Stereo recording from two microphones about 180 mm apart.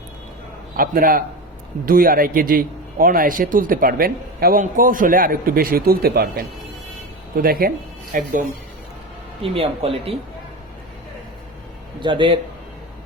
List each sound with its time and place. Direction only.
0.8 s a man's voice: 55° right (ahead or behind)
9.4 s speech: 30° right (ahead or behind)
11.9 s speech: 25° right (ahead or behind)